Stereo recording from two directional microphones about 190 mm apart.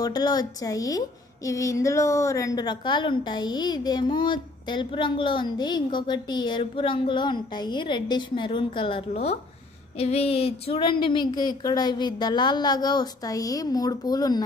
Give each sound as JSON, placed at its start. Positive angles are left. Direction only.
{"t": 0.0, "sound": "a woman's voice", "side_deg": 20}